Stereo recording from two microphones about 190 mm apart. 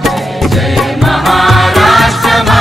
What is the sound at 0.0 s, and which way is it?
Music, centre (ahead or behind).